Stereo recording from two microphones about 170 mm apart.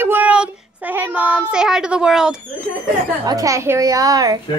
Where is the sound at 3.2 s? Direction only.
20° right (ahead or behind).